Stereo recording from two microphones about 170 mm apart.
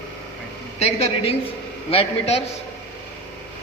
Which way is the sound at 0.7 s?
40° left (ahead or behind).